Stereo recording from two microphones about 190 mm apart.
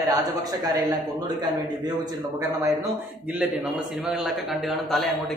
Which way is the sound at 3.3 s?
5° right (ahead or behind).